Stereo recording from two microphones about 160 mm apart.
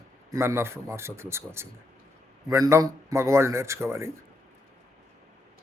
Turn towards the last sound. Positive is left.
turn(degrees=-15)  # may be behind; listen again after turning